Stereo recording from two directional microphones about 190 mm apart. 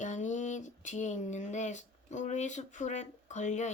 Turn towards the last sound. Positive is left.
turn(degrees=40)  # may be behind; listen again after turning